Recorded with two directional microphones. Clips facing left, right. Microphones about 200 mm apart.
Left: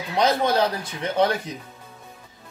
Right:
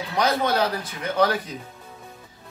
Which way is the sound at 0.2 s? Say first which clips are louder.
Left 2 dB; 30° left (ahead or behind).